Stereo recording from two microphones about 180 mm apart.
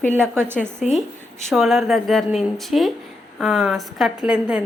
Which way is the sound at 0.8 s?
Centre (ahead or behind).